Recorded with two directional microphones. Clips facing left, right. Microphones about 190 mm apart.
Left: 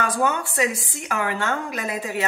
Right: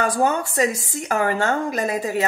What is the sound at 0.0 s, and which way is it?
Speech, 40° right (ahead or behind).